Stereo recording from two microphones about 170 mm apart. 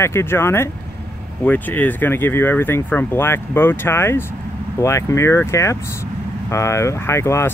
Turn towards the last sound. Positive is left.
turn(degrees=15)  # may be behind; listen again after turning